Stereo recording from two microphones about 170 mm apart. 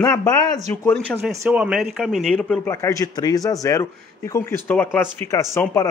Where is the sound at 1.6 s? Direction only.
Centre (ahead or behind).